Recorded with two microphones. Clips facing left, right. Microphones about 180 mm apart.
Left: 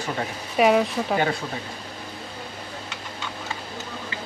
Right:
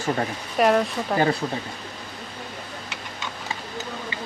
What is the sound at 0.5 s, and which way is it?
Speech, 5° left (ahead or behind).